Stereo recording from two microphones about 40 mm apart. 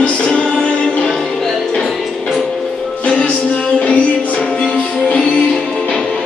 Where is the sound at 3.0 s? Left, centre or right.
Left.